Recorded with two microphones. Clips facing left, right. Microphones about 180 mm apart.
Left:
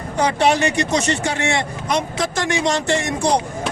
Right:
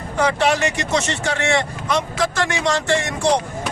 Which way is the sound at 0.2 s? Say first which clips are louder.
Left 1 dB; 20° left (ahead or behind).